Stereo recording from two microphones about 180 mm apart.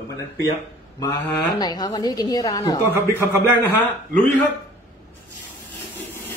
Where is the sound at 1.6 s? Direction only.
20° left (ahead or behind).